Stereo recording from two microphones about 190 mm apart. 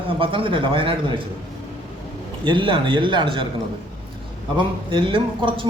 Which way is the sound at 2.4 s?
25° right (ahead or behind).